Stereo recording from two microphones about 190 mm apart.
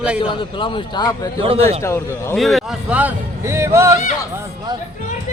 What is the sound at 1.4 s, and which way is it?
Speech, 30° right (ahead or behind).